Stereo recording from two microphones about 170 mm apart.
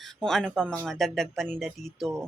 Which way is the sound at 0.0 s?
Centre (ahead or behind).